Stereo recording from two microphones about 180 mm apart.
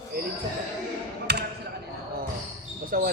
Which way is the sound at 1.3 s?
65° right (ahead or behind).